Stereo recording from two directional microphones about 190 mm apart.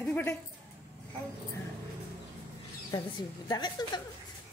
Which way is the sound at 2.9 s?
25° left (ahead or behind).